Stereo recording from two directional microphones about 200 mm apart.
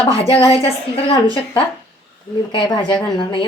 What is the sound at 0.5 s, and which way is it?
A woman's voice, 25° left (ahead or behind).